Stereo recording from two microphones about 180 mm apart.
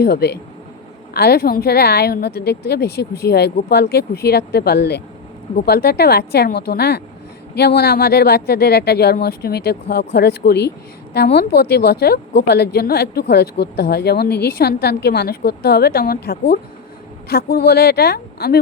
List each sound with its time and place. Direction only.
0.0 s a woman's voice: 65° left (ahead or behind)